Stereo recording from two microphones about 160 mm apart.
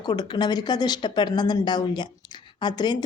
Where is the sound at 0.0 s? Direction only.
25° left (ahead or behind).